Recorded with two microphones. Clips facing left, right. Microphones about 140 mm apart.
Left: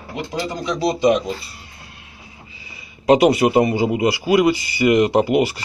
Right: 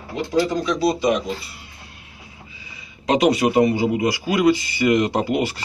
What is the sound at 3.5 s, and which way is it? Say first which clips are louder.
A man's voice: left 1 dB; 20° left (ahead or behind).